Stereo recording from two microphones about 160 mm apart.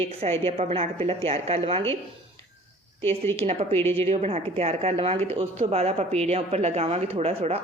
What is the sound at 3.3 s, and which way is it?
Speech, 40° right (ahead or behind).